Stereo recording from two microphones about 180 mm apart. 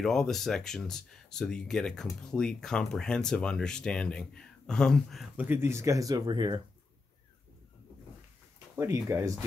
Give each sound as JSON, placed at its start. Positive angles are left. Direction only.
{"t": 0.0, "sound": "speech", "side_deg": 5}
{"t": 5.4, "sound": "speech", "side_deg": -10}
{"t": 8.7, "sound": "speech", "side_deg": -15}